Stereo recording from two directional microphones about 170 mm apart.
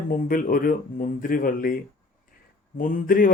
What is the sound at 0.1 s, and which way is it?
A man's voice, 55° left (ahead or behind).